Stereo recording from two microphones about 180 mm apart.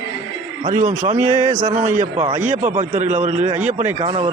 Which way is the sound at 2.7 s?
40° right (ahead or behind).